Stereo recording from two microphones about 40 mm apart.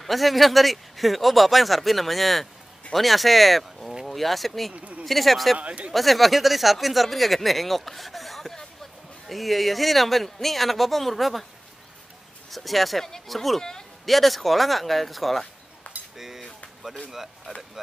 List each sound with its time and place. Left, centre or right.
0.0 s speech: centre
4.7 s speech: right
5.0 s speech: centre
5.6 s speech: right
5.9 s speech: centre
12.4 s speech: centre
13.6 s speech: centre
14.0 s speech: centre
16.2 s cutlery: centre